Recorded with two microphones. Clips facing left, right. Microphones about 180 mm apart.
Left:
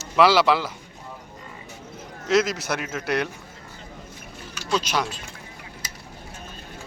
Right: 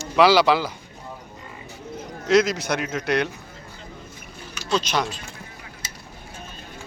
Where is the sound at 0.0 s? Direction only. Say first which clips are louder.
Right 1 dB; centre (ahead or behind).